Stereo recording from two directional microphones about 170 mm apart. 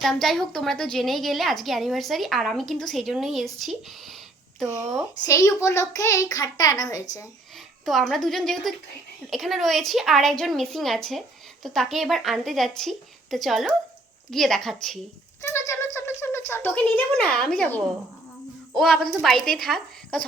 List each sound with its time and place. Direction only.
0.0 s a woman's voice: centre (ahead or behind)
5.2 s a child's voice: 20° left (ahead or behind)
7.9 s a woman's voice: centre (ahead or behind)
15.4 s a woman's voice: 15° left (ahead or behind)